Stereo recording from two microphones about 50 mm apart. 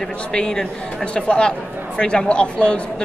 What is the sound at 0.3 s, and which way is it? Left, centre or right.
A man's voice, centre.